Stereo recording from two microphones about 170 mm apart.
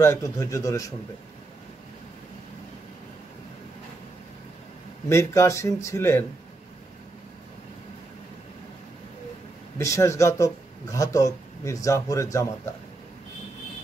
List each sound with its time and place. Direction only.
0.0 s speech: 15° left (ahead or behind)
5.1 s speech: 15° left (ahead or behind)
9.8 s speech: 15° left (ahead or behind)